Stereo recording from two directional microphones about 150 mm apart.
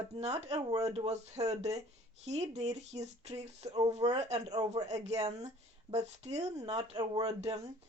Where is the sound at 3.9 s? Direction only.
45° right (ahead or behind).